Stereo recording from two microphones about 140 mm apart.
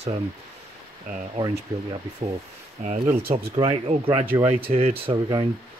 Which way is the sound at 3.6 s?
35° right (ahead or behind).